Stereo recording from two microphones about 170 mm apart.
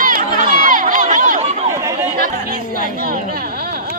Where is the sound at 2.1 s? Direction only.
60° right (ahead or behind).